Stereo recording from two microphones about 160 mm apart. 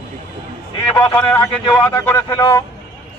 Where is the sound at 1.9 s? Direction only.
15° left (ahead or behind).